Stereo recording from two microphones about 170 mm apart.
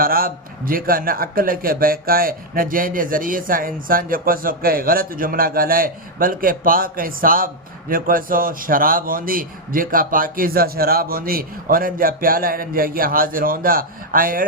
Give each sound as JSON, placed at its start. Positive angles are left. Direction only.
{"t": 0.0, "sound": "a man's voice", "side_deg": -60}